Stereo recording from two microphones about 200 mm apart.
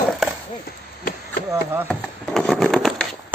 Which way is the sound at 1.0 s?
50° left (ahead or behind).